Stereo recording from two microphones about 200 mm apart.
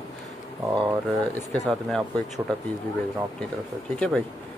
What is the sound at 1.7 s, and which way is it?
Speech, centre (ahead or behind).